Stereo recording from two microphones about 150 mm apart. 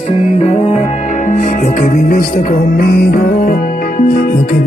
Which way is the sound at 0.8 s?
60° left (ahead or behind).